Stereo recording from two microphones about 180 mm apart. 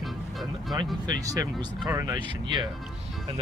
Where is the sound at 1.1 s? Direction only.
20° right (ahead or behind).